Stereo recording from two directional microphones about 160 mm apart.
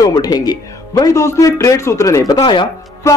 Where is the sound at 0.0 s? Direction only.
25° left (ahead or behind).